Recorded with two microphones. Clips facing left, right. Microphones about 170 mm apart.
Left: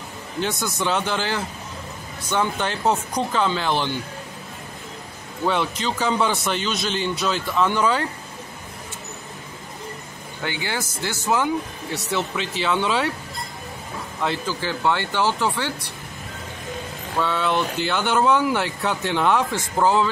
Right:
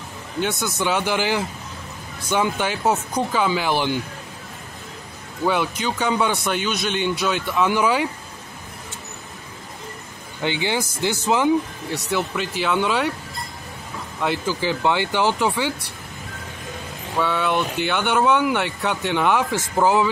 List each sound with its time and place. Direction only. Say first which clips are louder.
0.4 s speech: right 1 dB; centre (ahead or behind)
5.4 s speech: right 1 dB; 5° right (ahead or behind)
10.4 s speech: right 5 dB; 20° right (ahead or behind)
11.9 s speech: right 2 dB; 5° right (ahead or behind)
14.2 s speech: right 3 dB; 10° right (ahead or behind)
17.2 s speech: right 1 dB; 5° right (ahead or behind)